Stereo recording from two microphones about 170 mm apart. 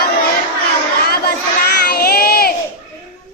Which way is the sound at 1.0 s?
65° left (ahead or behind).